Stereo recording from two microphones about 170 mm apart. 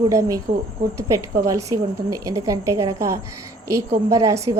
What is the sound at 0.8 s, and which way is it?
Speech, 55° right (ahead or behind).